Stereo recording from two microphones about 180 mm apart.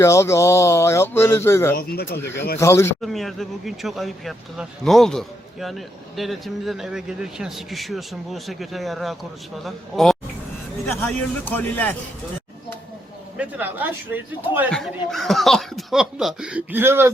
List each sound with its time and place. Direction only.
0.0 s speech: 15° left (ahead or behind)
1.7 s speech: 55° left (ahead or behind)
2.6 s speech: 15° left (ahead or behind)
3.0 s speech: centre (ahead or behind)
13.3 s a man's voice: 10° right (ahead or behind)
14.7 s speech: centre (ahead or behind)